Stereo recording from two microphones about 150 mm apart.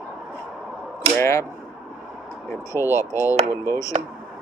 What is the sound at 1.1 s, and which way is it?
Speech, 20° left (ahead or behind).